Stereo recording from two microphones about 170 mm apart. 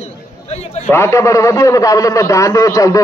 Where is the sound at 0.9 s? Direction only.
15° left (ahead or behind).